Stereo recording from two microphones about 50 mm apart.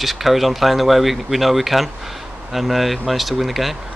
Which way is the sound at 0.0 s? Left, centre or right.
Centre.